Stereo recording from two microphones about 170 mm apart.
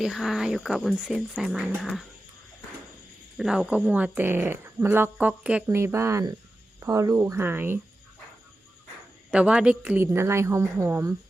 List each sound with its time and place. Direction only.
0.0 s speech: centre (ahead or behind)
3.3 s speech: centre (ahead or behind)
9.3 s speech: 5° right (ahead or behind)